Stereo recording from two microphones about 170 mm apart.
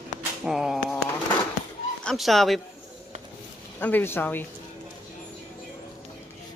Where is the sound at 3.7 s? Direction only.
10° left (ahead or behind).